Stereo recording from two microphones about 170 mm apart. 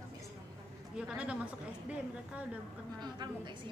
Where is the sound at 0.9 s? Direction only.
5° right (ahead or behind).